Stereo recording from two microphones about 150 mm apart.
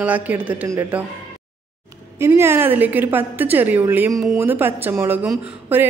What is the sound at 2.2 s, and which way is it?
A woman's voice, 15° right (ahead or behind).